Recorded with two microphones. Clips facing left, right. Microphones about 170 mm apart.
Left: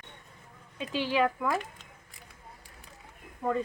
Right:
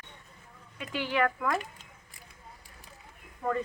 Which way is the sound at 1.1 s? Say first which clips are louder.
Even; 10° left (ahead or behind).